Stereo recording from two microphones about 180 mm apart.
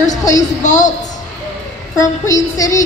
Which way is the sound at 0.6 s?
45° left (ahead or behind).